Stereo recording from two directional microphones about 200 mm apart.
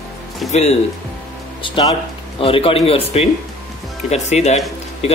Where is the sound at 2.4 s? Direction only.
30° left (ahead or behind).